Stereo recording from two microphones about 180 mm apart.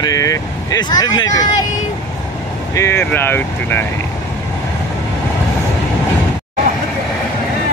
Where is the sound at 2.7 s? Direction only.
15° left (ahead or behind).